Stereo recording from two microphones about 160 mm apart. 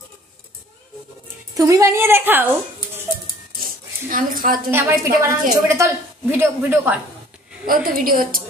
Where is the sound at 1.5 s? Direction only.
20° right (ahead or behind).